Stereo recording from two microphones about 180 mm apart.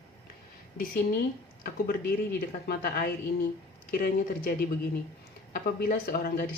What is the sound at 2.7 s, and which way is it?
Speech, 55° left (ahead or behind).